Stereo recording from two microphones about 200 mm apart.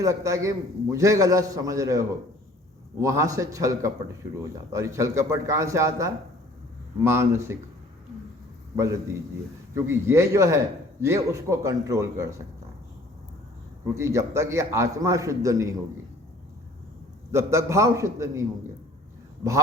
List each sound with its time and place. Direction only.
0.0 s a man's voice: 15° right (ahead or behind)
8.7 s a man's voice: 15° right (ahead or behind)
13.8 s a man's voice: 15° right (ahead or behind)
17.3 s a man's voice: 15° right (ahead or behind)